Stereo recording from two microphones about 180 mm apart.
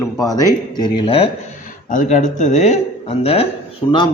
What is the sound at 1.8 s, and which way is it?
Speech, 45° left (ahead or behind).